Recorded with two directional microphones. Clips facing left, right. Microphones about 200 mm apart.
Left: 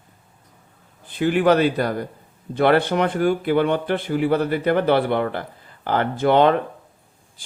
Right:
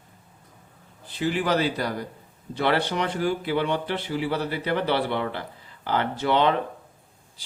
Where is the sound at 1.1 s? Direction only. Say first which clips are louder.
Left 7 dB; 55° left (ahead or behind).